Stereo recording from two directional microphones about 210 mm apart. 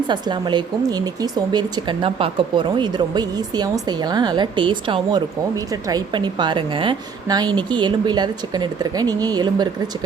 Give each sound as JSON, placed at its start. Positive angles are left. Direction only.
{"t": 0.1, "sound": "speech", "side_deg": -20}